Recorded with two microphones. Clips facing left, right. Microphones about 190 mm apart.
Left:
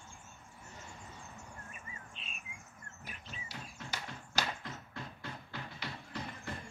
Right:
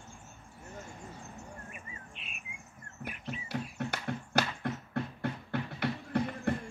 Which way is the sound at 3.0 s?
60° right (ahead or behind).